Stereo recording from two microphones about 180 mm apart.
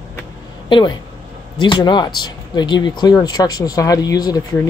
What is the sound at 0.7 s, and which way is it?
Speech, 25° left (ahead or behind).